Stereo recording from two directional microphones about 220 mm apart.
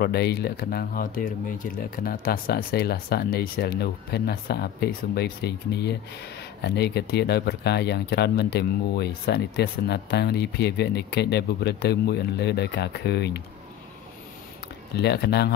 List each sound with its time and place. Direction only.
0.0 s speech: 45° left (ahead or behind)
15.0 s speech: 50° left (ahead or behind)